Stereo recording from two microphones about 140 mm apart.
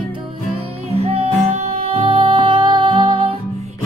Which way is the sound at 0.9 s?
45° right (ahead or behind).